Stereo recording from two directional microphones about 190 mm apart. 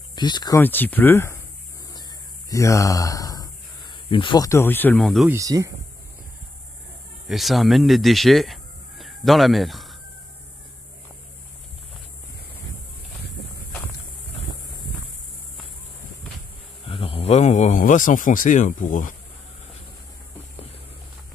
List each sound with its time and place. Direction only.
0.1 s speech: 20° left (ahead or behind)
0.6 s speech: 10° left (ahead or behind)
2.5 s speech: 15° left (ahead or behind); by 5.3 s centre (ahead or behind)
5.3 s speech: 15° right (ahead or behind)
7.2 s speech: centre (ahead or behind)
16.8 s a sound: 30° left (ahead or behind)